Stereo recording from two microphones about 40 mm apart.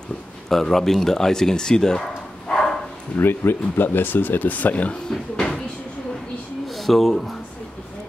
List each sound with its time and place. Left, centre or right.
0.5 s speech: centre
3.2 s speech: left
6.8 s speech: centre